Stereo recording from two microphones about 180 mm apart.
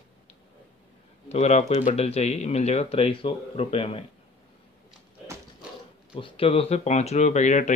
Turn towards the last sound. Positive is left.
turn(degrees=40)  # may be behind; listen again after turning